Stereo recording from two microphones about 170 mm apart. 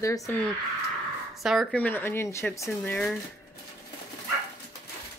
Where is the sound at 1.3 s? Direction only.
Centre (ahead or behind).